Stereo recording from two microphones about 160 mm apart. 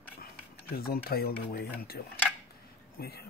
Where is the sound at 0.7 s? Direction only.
70° left (ahead or behind).